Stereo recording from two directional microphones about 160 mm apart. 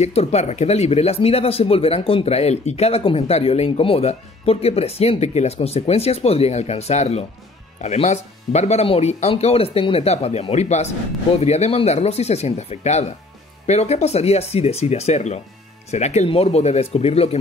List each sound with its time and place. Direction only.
0.0 s speech: 40° left (ahead or behind)